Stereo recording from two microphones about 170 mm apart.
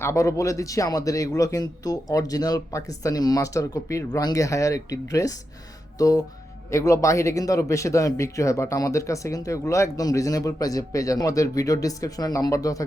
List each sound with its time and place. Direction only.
0.0 s a man's voice: 15° left (ahead or behind)